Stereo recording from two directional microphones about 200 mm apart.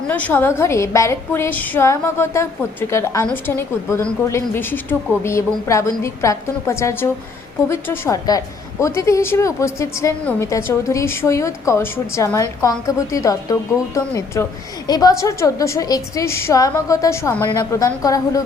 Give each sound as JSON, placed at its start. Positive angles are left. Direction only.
{"t": 0.1, "sound": "a woman's voice", "side_deg": 10}